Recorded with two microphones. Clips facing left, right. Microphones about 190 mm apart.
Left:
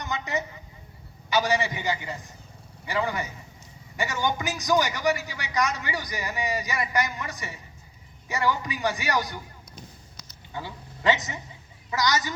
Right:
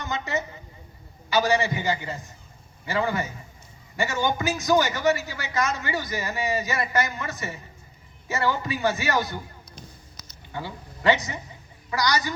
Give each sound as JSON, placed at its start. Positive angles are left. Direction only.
{"t": 0.0, "sound": "a woman's voice", "side_deg": 15}
{"t": 10.5, "sound": "a woman's voice", "side_deg": 20}